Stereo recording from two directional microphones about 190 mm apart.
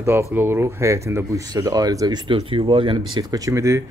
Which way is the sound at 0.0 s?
10° right (ahead or behind).